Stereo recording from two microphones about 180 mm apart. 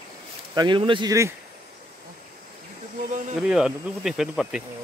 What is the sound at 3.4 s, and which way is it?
Speech, 5° right (ahead or behind).